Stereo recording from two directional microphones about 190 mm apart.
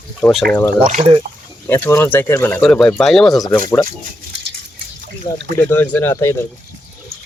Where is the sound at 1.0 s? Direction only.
25° right (ahead or behind).